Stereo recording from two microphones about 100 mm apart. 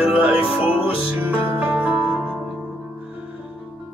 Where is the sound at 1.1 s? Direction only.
15° right (ahead or behind).